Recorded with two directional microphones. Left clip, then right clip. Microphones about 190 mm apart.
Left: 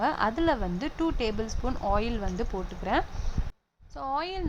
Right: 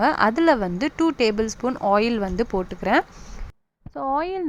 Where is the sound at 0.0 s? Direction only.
30° right (ahead or behind).